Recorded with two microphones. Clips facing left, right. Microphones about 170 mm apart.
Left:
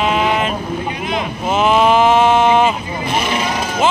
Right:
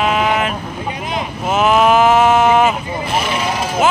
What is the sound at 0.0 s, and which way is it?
Vehicle, 5° right (ahead or behind).